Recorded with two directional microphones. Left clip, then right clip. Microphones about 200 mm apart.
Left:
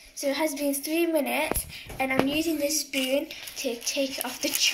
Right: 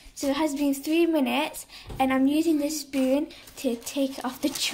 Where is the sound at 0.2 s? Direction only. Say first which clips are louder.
Right 1 dB; 50° right (ahead or behind).